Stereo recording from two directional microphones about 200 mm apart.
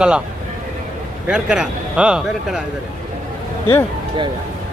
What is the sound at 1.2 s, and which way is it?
A man's voice, 5° right (ahead or behind).